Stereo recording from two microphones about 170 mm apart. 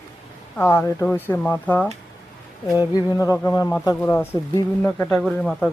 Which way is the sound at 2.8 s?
20° left (ahead or behind).